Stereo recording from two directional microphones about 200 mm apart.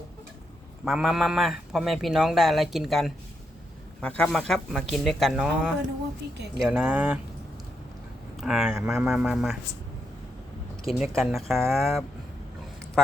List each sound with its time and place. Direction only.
0.9 s speech: centre (ahead or behind)
6.3 s speech: 60° right (ahead or behind)
6.6 s speech: 5° right (ahead or behind)
8.4 s speech: 5° right (ahead or behind)
10.9 s speech: centre (ahead or behind)